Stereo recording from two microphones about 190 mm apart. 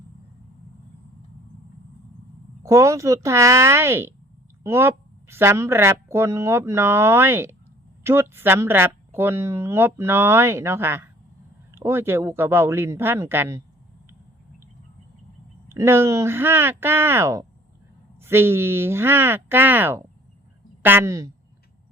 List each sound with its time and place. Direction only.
2.6 s speech: 15° right (ahead or behind)
15.7 s speech: 15° right (ahead or behind)